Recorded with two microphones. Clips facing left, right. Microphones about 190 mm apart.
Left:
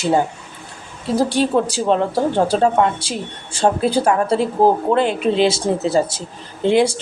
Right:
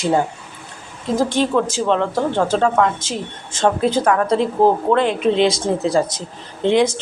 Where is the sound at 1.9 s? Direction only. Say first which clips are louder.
Left 2 dB; 40° left (ahead or behind).